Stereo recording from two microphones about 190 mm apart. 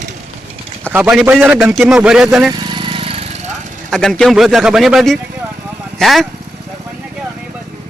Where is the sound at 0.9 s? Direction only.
5° right (ahead or behind).